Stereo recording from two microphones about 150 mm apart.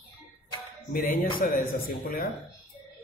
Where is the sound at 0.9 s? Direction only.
75° left (ahead or behind).